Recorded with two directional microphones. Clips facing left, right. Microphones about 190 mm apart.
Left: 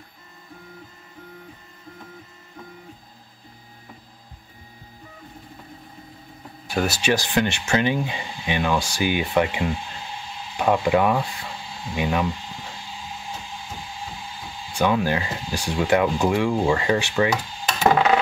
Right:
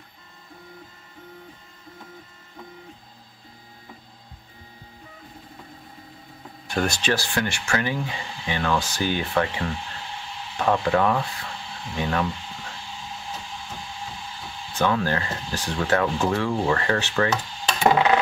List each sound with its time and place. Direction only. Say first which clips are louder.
6.7 s speech: left 2 dB; 5° left (ahead or behind)
14.7 s speech: left 2 dB; 15° left (ahead or behind)